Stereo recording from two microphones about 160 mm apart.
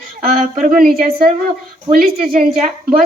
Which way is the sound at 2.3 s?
50° right (ahead or behind).